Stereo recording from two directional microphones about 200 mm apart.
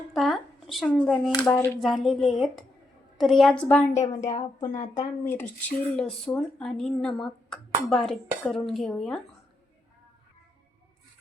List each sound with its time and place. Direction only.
0.1 s a sound: centre (ahead or behind)
1.4 s speech: 10° left (ahead or behind)
1.8 s speech: centre (ahead or behind)
3.9 s a woman's voice: 35° left (ahead or behind)
4.9 s speech: 10° left (ahead or behind)